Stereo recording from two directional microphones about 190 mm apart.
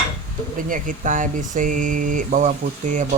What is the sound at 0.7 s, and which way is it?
Speech, 45° right (ahead or behind).